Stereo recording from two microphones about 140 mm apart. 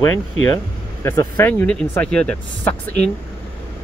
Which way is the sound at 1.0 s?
15° left (ahead or behind).